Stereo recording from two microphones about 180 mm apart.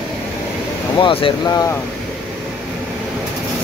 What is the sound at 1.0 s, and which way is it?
Speech, 30° left (ahead or behind).